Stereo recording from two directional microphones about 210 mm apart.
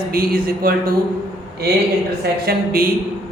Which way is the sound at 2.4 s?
45° right (ahead or behind).